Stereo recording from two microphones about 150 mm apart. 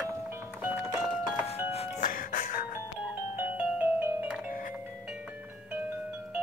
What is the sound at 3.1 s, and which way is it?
Music, 10° right (ahead or behind).